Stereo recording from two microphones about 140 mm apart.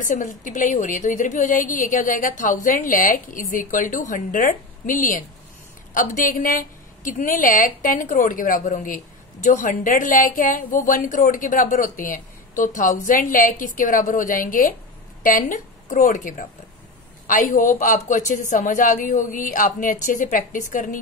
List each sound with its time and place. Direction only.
0.0 s a woman's voice: 65° left (ahead or behind)